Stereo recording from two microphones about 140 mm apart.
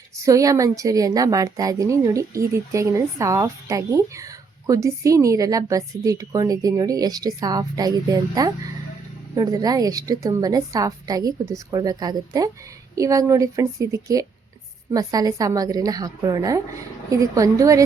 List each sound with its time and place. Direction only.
0.2 s a woman's voice: 25° right (ahead or behind)